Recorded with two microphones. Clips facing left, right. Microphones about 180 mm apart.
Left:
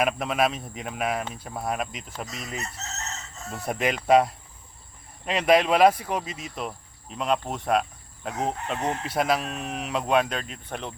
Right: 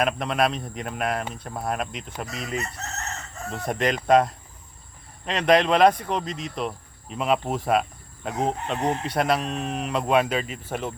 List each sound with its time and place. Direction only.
0.0 s speech: 5° left (ahead or behind)
2.6 s chicken: 55° right (ahead or behind)
3.5 s speech: 5° left (ahead or behind)